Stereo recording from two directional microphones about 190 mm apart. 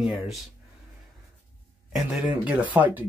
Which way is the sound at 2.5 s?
10° right (ahead or behind).